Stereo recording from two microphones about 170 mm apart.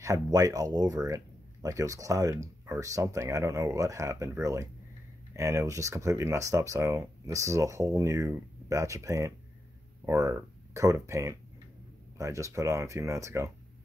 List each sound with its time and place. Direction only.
0.0 s speech: 20° right (ahead or behind)